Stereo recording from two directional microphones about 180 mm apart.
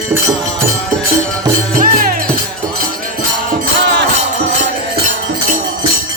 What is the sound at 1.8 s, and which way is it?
Music, 50° right (ahead or behind).